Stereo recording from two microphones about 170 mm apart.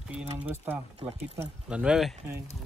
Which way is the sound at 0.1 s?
10° right (ahead or behind).